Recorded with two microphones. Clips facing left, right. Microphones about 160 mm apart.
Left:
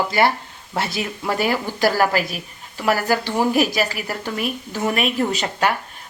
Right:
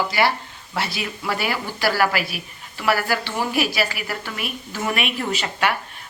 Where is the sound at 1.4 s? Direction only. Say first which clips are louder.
Left 8 dB; 40° left (ahead or behind).